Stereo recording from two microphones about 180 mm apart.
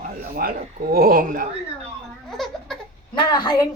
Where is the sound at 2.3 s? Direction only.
Centre (ahead or behind).